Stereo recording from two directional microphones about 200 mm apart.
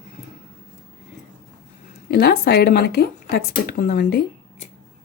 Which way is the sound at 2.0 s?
50° left (ahead or behind).